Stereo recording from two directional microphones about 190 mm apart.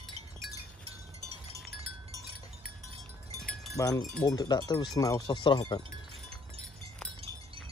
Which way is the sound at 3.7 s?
15° left (ahead or behind).